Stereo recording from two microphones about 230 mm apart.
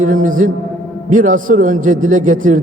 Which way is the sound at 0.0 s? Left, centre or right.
Right.